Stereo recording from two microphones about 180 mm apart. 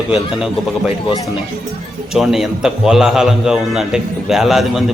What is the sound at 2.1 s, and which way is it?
A man's voice, centre (ahead or behind).